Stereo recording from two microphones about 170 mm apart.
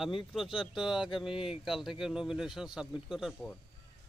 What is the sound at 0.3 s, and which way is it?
Speech, centre (ahead or behind).